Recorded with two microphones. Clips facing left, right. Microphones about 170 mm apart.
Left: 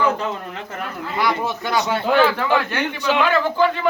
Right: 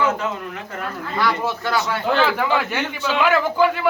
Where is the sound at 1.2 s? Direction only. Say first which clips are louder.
Even; 15° left (ahead or behind).